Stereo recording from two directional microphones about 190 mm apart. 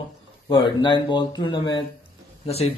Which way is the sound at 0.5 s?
25° left (ahead or behind).